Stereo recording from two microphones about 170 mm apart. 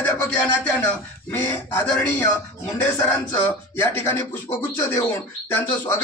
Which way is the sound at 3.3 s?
10° left (ahead or behind).